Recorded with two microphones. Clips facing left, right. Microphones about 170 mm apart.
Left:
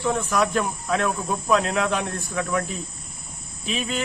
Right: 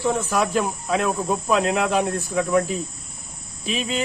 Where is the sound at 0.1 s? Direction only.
25° right (ahead or behind).